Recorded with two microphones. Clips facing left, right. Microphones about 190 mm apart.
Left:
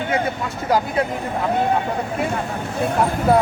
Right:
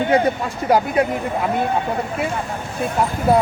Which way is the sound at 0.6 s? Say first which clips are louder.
Right 3 dB; 20° right (ahead or behind).